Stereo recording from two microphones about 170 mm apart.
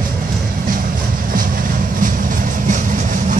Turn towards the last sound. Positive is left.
turn(degrees=-50)  # may be behind; listen again after turning